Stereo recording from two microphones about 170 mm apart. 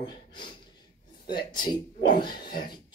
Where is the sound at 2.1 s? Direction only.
60° left (ahead or behind).